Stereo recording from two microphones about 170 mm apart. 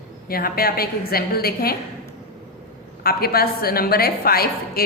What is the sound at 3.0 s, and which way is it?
Speech, 65° left (ahead or behind).